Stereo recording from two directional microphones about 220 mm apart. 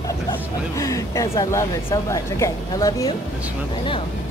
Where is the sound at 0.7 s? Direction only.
15° left (ahead or behind).